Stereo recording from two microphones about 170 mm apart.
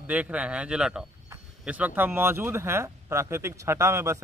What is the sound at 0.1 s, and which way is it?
Speech, 10° right (ahead or behind).